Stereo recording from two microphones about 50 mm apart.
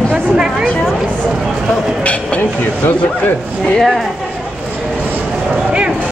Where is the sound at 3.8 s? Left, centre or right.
Centre.